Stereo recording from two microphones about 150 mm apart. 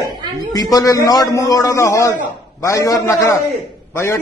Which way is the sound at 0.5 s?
25° left (ahead or behind).